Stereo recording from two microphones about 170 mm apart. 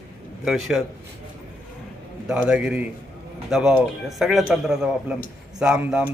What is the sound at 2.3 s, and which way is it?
A man's voice, 5° right (ahead or behind).